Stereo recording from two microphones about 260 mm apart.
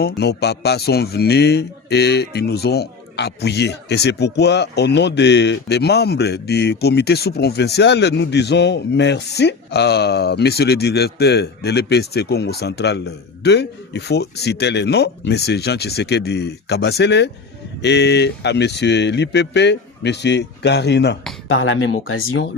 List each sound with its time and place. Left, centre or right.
0.0 s speech: left